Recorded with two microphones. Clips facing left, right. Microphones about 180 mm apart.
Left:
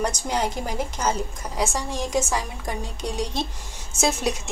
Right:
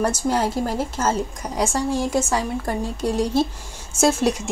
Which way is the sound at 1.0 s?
10° right (ahead or behind).